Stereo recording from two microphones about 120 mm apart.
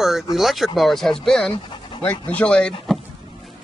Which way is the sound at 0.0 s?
Centre (ahead or behind).